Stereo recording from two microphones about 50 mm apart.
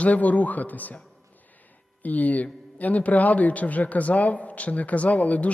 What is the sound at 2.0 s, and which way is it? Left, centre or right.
A man's voice, left.